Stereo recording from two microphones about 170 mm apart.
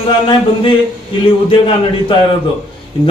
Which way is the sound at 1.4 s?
30° left (ahead or behind).